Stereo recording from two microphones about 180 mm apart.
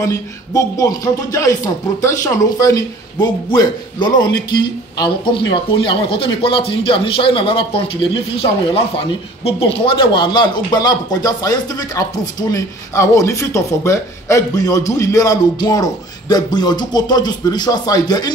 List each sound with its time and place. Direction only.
0.0 s speech: 20° left (ahead or behind)